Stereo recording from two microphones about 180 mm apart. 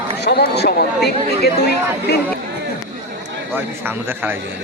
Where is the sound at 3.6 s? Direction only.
10° right (ahead or behind).